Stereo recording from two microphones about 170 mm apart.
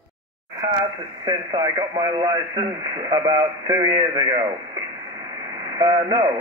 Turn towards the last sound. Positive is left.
turn(degrees=-20)  # may be behind; listen again after turning